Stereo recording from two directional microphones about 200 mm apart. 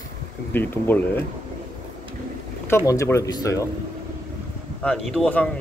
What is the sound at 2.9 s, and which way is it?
Speech, 15° left (ahead or behind).